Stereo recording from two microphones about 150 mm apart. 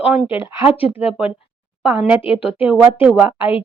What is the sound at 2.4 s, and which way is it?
Speech, 10° right (ahead or behind).